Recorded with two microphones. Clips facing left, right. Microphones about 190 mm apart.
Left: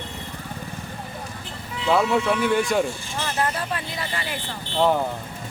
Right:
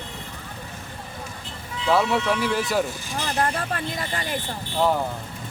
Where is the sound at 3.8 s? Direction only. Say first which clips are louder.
Right 2 dB; 45° right (ahead or behind).